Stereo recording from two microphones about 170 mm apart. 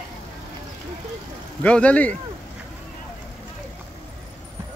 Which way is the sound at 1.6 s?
5° left (ahead or behind).